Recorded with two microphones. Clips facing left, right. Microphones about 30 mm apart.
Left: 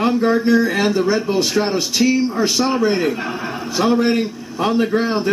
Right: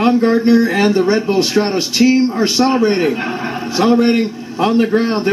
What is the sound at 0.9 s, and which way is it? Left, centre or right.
A man's voice, right.